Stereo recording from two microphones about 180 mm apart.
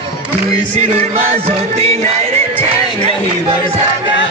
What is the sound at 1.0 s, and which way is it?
Music, 35° right (ahead or behind).